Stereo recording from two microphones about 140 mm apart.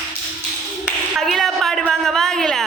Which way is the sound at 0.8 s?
Centre (ahead or behind).